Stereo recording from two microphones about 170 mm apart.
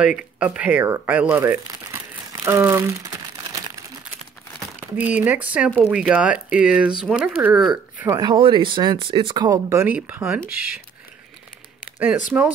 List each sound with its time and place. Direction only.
0.0 s speech: 5° right (ahead or behind)
4.7 s speech: 10° right (ahead or behind)
8.1 s speech: 25° right (ahead or behind); by 10.8 s 5° right (ahead or behind)
12.3 s speech: 10° right (ahead or behind)